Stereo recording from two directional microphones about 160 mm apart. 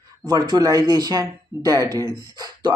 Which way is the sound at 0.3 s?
25° right (ahead or behind).